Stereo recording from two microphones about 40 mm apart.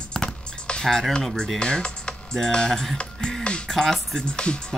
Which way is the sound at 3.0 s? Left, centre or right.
Left.